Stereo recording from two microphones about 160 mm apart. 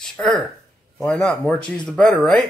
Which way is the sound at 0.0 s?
5° left (ahead or behind).